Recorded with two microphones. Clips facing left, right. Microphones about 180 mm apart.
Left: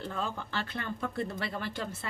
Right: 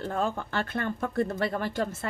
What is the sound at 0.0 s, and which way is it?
Speech, 50° right (ahead or behind).